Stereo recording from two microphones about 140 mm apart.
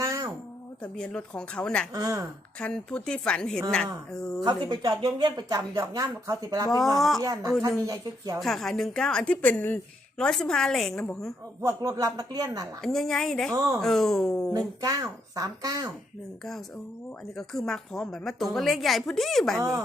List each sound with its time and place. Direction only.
0.0 s a sound: 20° right (ahead or behind)
0.8 s a woman's voice: 5° left (ahead or behind)
1.9 s speech: 25° right (ahead or behind)
2.6 s a woman's voice: 5° left (ahead or behind)
4.4 s speech: 30° right (ahead or behind)
6.7 s a woman's voice: centre (ahead or behind)
7.2 s speech: 25° right (ahead or behind)
8.4 s a woman's voice: centre (ahead or behind)
11.6 s speech: 25° right (ahead or behind)
12.8 s a woman's voice: 5° left (ahead or behind)
14.8 s speech: 25° right (ahead or behind)
17.3 s a woman's voice: 5° left (ahead or behind)